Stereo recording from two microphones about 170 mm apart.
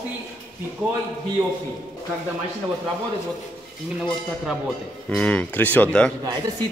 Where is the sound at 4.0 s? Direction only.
5° right (ahead or behind).